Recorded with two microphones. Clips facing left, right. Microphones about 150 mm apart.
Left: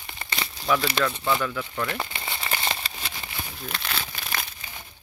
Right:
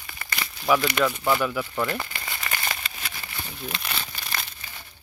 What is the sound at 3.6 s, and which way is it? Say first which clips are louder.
Crumpling: even; centre (ahead or behind).